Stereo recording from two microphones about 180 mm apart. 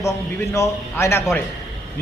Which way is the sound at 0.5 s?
15° left (ahead or behind).